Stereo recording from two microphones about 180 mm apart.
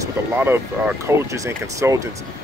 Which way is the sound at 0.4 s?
10° right (ahead or behind).